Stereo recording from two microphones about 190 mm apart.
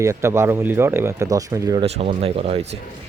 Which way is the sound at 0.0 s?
15° right (ahead or behind).